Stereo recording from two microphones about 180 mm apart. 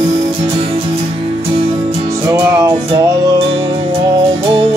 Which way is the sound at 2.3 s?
15° right (ahead or behind).